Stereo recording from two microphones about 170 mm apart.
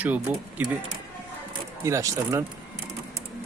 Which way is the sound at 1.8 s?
15° right (ahead or behind).